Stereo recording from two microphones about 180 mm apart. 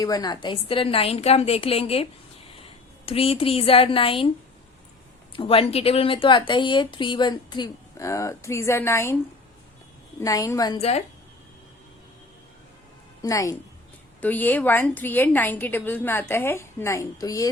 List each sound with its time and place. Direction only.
0.0 s a woman's voice: 20° left (ahead or behind)
3.1 s a woman's voice: 30° left (ahead or behind)
5.3 s speech: 30° left (ahead or behind); by 9.1 s 15° left (ahead or behind)
10.2 s speech: 20° left (ahead or behind)
10.8 s a woman's voice: 35° left (ahead or behind)
13.2 s a woman's voice: 20° left (ahead or behind)